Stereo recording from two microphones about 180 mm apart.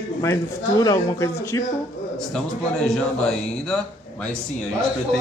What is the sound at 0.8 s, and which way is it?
Speech, 20° left (ahead or behind).